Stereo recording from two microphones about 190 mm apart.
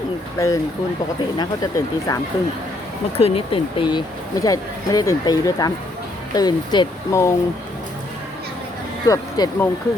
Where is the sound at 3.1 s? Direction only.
30° left (ahead or behind); by 7.3 s 15° left (ahead or behind).